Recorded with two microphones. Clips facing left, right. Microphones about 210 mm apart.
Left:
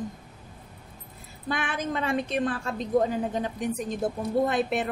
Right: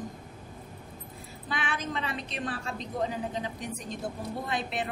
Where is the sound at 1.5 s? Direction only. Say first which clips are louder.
Left 4 dB; 50° left (ahead or behind).